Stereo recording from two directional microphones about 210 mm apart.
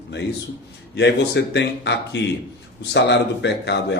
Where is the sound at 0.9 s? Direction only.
55° left (ahead or behind).